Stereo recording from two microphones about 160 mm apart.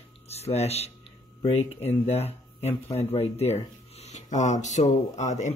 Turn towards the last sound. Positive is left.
turn(degrees=45)  # may be behind; listen again after turning